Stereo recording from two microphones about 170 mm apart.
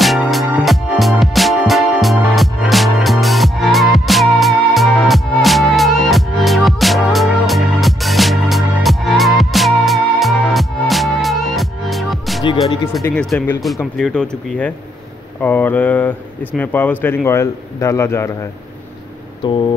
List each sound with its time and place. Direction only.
0.0 s music: centre (ahead or behind)
13.0 s speech: 5° left (ahead or behind)
19.4 s a sound: 30° left (ahead or behind)